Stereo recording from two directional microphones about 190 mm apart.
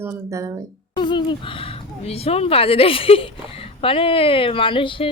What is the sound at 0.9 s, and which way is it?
Speech, 25° left (ahead or behind).